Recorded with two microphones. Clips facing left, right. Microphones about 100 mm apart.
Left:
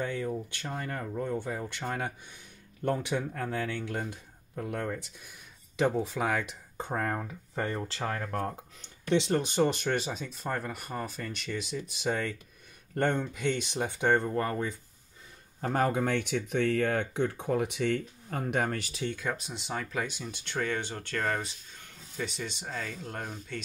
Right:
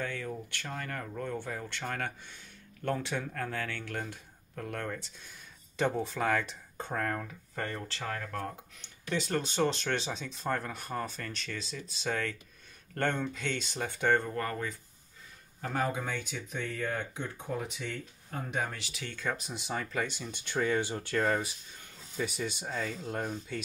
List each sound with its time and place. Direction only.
0.0 s speech: 20° left (ahead or behind)
6.9 s speech: 20° left (ahead or behind)
9.1 s speech: 20° left (ahead or behind)
15.6 s speech: 45° left (ahead or behind)
19.1 s speech: centre (ahead or behind)